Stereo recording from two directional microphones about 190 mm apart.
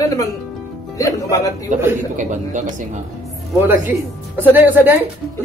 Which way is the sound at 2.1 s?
40° right (ahead or behind).